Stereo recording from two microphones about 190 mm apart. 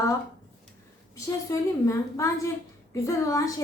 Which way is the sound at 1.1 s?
15° left (ahead or behind).